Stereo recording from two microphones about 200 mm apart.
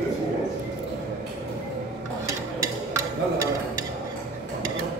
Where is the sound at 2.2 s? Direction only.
15° right (ahead or behind).